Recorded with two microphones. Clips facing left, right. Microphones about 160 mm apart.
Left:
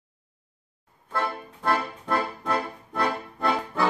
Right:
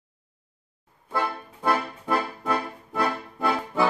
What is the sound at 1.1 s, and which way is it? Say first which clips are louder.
Music: right 1 dB; 10° right (ahead or behind).